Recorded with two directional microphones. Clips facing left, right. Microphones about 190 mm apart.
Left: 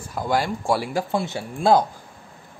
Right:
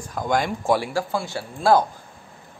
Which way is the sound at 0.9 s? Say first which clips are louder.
Left 1 dB; 20° left (ahead or behind).